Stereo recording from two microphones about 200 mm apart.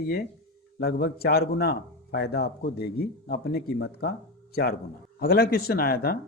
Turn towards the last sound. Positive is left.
turn(degrees=50)  # may be behind; listen again after turning